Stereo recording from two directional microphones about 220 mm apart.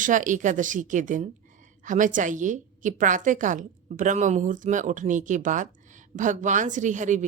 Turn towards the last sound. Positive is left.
turn(degrees=-35)  # may be behind; listen again after turning